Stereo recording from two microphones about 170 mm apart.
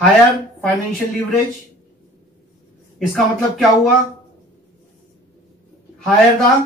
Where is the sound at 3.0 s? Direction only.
Centre (ahead or behind).